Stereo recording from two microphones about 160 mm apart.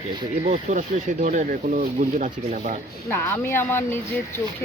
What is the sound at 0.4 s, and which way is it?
Speech, 50° right (ahead or behind).